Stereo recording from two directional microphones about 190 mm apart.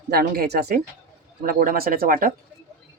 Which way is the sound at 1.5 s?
45° right (ahead or behind).